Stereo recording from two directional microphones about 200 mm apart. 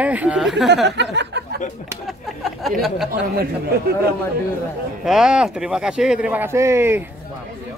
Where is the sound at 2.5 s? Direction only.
Centre (ahead or behind).